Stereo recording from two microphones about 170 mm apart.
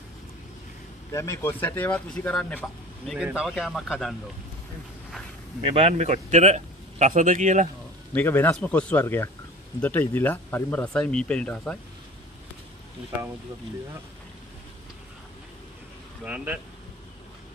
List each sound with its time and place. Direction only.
1.1 s speech: 15° left (ahead or behind); by 4.1 s centre (ahead or behind)
5.8 s a man's voice: 40° right (ahead or behind)
8.1 s speech: 10° left (ahead or behind)
16.3 s speech: 10° right (ahead or behind)